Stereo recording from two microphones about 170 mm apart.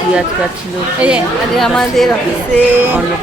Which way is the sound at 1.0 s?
Centre (ahead or behind).